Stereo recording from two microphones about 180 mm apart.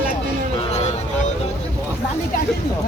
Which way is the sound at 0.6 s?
35° left (ahead or behind).